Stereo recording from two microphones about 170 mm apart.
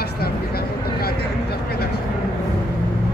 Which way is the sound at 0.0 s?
65° left (ahead or behind).